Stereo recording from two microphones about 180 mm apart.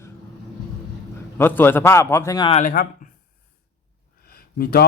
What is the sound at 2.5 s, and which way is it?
Speech, 45° left (ahead or behind).